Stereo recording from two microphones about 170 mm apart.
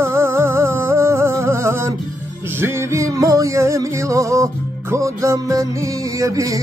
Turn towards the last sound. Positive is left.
turn(degrees=-20)  # may be behind; listen again after turning